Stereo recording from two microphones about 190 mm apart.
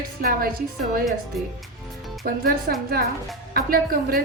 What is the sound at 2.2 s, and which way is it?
A woman's voice, 50° right (ahead or behind).